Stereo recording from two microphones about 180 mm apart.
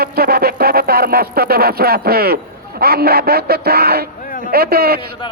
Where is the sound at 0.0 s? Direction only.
60° right (ahead or behind).